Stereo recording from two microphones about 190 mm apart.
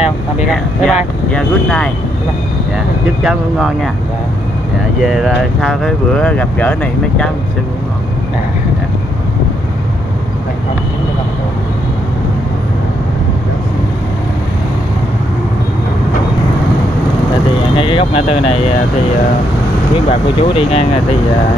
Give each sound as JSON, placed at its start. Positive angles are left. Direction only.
{"t": 0.0, "sound": "speech", "side_deg": -5}
{"t": 3.2, "sound": "speech", "side_deg": -5}
{"t": 5.0, "sound": "speech", "side_deg": 0}
{"t": 17.7, "sound": "speech", "side_deg": 30}
{"t": 20.1, "sound": "speech", "side_deg": 30}